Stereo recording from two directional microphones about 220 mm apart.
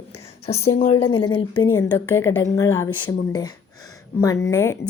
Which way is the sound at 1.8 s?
15° left (ahead or behind).